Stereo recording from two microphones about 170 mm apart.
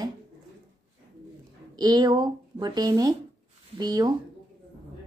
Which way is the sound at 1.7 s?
25° right (ahead or behind).